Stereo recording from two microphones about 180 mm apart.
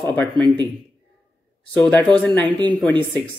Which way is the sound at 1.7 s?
5° left (ahead or behind).